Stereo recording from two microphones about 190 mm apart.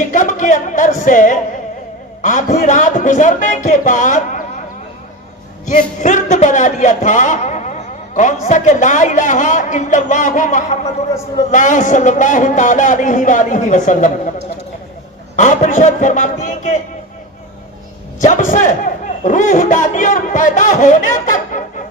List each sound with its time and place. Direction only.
0.1 s a man's voice: 40° left (ahead or behind)
5.6 s a man's voice: 40° left (ahead or behind)
15.4 s a man's voice: 40° left (ahead or behind)
18.2 s a man's voice: 40° left (ahead or behind)